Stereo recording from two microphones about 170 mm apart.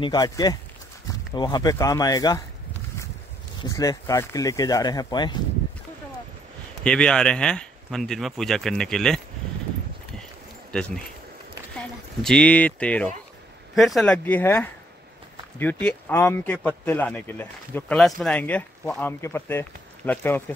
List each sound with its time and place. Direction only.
0.0 s speech: 25° left (ahead or behind)
3.6 s speech: 20° left (ahead or behind)
6.8 s speech: 5° left (ahead or behind)
10.7 s speech: 5° left (ahead or behind)